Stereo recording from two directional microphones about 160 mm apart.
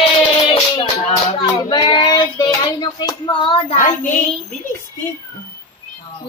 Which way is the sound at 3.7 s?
55° left (ahead or behind).